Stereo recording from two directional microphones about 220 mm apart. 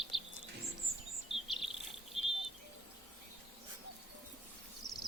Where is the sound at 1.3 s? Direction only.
25° left (ahead or behind).